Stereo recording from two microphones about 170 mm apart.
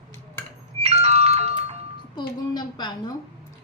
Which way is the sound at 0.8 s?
40° right (ahead or behind).